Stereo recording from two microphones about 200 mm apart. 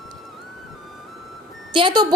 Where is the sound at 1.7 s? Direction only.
25° right (ahead or behind).